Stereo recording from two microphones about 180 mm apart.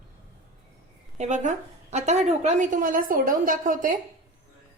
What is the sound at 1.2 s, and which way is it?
A woman's voice, 40° right (ahead or behind).